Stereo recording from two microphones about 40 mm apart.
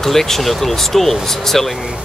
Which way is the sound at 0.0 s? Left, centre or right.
Centre.